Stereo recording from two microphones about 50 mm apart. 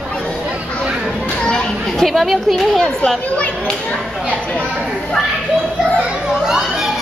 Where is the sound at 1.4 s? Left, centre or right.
Centre.